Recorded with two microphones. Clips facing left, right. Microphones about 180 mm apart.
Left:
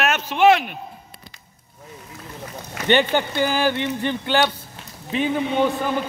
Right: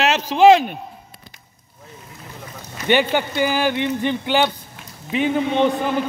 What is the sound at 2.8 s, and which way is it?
A man's voice, 10° right (ahead or behind).